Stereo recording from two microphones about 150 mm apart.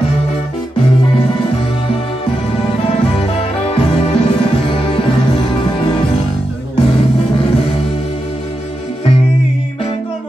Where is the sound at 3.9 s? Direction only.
40° left (ahead or behind).